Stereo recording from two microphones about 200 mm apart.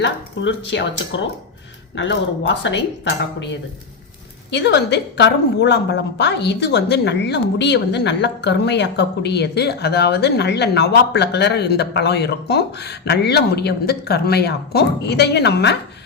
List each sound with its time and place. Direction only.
0.0 s a woman's voice: 65° left (ahead or behind)
4.5 s a woman's voice: 60° left (ahead or behind)